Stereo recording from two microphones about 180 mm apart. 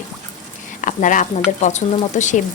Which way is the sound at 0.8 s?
45° left (ahead or behind).